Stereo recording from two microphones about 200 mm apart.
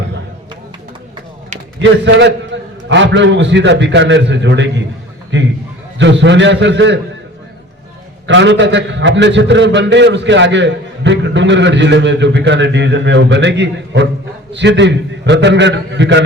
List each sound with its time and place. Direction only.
1.8 s a man's voice: 65° right (ahead or behind)
8.3 s a man's voice: 65° right (ahead or behind)